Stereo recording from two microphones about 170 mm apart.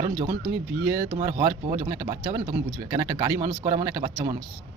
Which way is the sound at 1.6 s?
40° right (ahead or behind).